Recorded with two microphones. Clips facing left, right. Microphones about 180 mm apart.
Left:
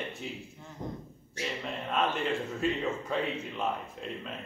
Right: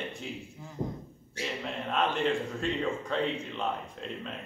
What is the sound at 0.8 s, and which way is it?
Speech, 25° right (ahead or behind).